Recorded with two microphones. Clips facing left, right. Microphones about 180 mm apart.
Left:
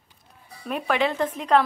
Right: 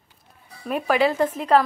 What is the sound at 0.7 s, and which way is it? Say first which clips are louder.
Speech: right 3 dB; 5° right (ahead or behind).